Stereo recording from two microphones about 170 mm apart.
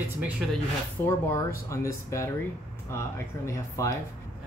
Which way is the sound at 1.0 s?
15° left (ahead or behind).